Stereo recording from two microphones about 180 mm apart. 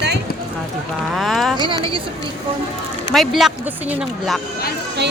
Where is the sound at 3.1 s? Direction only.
Centre (ahead or behind).